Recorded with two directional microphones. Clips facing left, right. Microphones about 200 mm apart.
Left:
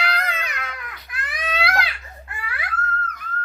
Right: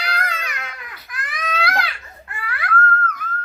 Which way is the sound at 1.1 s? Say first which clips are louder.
Right 1 dB; 30° left (ahead or behind).